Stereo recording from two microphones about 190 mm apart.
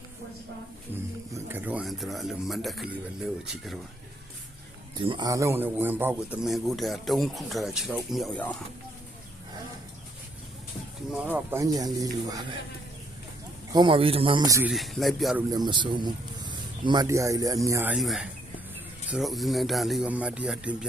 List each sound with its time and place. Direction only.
1.3 s speech: 10° right (ahead or behind)
4.9 s speech: 25° right (ahead or behind); by 8.5 s 5° left (ahead or behind)
11.1 s speech: 5° right (ahead or behind)
13.7 s a man's voice: 25° right (ahead or behind)
14.7 s speech: centre (ahead or behind)
15.4 s a man's voice: 20° right (ahead or behind)
17.9 s speech: centre (ahead or behind)